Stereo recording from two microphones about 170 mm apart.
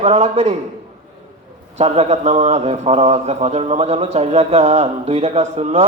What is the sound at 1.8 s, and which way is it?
Speech, 40° right (ahead or behind).